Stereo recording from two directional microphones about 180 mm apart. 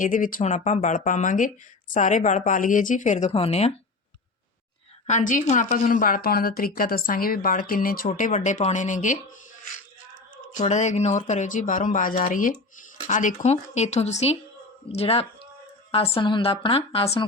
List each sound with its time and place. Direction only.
0.0 s speech: 50° left (ahead or behind)
5.0 s speech: 45° left (ahead or behind)
10.5 s a woman's voice: 40° left (ahead or behind)